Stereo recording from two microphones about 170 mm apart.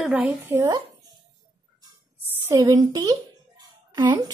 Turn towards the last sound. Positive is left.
turn(degrees=-25)  # may be behind; listen again after turning